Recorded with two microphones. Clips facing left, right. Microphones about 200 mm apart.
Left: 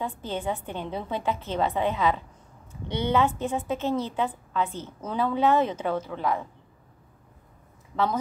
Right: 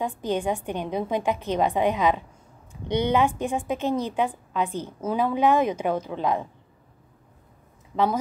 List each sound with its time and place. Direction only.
0.0 s a woman's voice: 15° right (ahead or behind)
7.9 s speech: 15° right (ahead or behind)